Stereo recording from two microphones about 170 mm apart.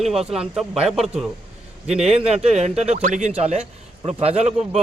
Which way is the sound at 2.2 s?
35° right (ahead or behind).